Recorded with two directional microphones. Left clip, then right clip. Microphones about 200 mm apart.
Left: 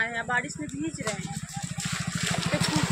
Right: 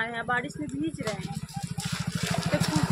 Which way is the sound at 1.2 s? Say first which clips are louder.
Left 1 dB; 40° right (ahead or behind).